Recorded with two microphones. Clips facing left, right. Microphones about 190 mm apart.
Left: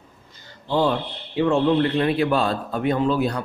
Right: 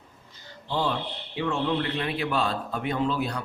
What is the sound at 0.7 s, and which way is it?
A man's voice, 50° left (ahead or behind).